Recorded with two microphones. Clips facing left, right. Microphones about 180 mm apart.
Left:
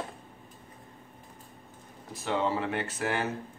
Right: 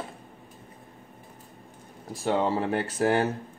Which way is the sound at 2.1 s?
35° right (ahead or behind).